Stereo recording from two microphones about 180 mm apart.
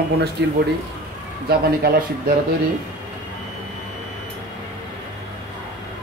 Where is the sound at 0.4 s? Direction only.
70° right (ahead or behind).